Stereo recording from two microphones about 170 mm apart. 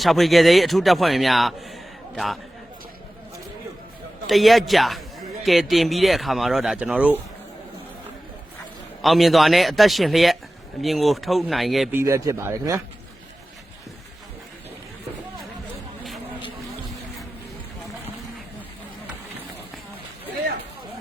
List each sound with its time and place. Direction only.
0.0 s speech: centre (ahead or behind)
4.3 s speech: centre (ahead or behind)
9.0 s speech: centre (ahead or behind)
11.9 s speech: 20° right (ahead or behind)